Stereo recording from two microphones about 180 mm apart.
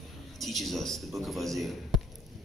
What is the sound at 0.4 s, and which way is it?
A man's voice, centre (ahead or behind).